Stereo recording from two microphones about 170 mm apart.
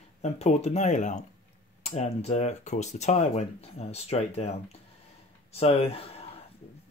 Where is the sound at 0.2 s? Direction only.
40° left (ahead or behind).